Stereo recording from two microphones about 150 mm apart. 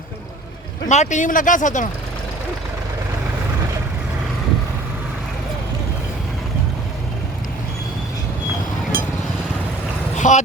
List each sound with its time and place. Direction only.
0.9 s speech: 55° left (ahead or behind)
8.9 s vehicle: 75° right (ahead or behind)
10.2 s a sound: 55° left (ahead or behind)